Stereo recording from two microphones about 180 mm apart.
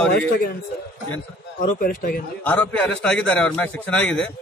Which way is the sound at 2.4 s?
10° left (ahead or behind).